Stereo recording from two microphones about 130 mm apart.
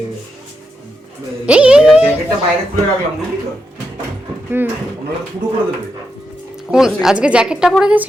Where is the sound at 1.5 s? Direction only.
10° right (ahead or behind).